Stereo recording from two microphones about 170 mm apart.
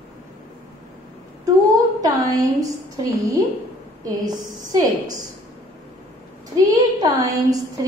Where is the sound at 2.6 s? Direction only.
20° right (ahead or behind).